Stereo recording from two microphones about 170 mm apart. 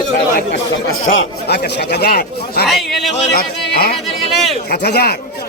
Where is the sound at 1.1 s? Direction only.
60° left (ahead or behind).